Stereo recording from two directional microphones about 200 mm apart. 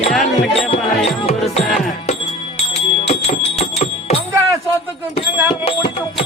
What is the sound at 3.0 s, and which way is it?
Music, 30° left (ahead or behind).